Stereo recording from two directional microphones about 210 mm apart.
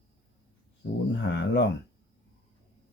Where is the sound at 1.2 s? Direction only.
55° left (ahead or behind).